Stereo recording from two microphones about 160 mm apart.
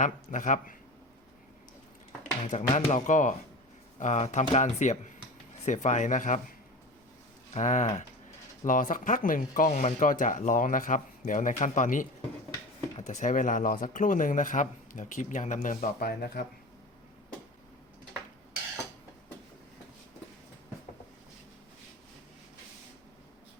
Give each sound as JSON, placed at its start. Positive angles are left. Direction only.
{"t": 0.0, "sound": "speech", "side_deg": 55}
{"t": 2.5, "sound": "speech", "side_deg": 45}
{"t": 7.5, "sound": "speech", "side_deg": 50}